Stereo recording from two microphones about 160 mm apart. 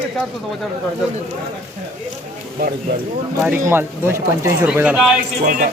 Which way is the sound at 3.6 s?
15° right (ahead or behind).